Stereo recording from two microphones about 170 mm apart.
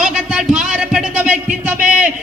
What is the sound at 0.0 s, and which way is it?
Music, 5° right (ahead or behind).